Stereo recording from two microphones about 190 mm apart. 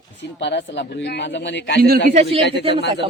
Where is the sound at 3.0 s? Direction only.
25° right (ahead or behind).